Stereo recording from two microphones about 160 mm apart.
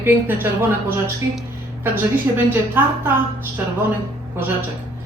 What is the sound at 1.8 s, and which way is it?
Speech, 15° right (ahead or behind).